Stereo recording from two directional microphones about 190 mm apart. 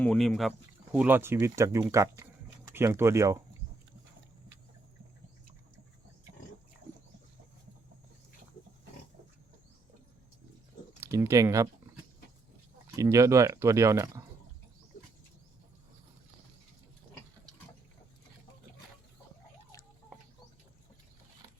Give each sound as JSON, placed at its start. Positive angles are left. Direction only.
{"t": 0.0, "sound": "speech", "side_deg": 0}
{"t": 11.0, "sound": "speech", "side_deg": -15}
{"t": 13.0, "sound": "speech", "side_deg": -15}